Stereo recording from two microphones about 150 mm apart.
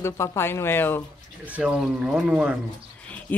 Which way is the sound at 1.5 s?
5° right (ahead or behind).